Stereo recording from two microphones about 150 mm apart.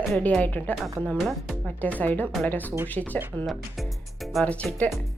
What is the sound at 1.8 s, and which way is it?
Speech, 10° left (ahead or behind).